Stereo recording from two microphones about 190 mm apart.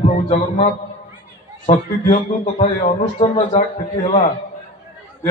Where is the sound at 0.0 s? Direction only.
35° left (ahead or behind).